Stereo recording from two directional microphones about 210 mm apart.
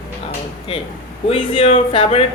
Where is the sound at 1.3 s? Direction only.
25° left (ahead or behind).